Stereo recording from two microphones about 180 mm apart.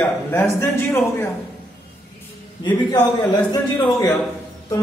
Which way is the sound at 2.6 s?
25° left (ahead or behind).